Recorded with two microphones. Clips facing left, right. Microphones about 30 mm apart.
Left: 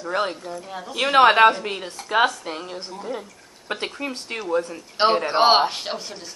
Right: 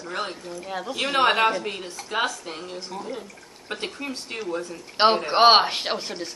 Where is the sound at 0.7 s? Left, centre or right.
Right.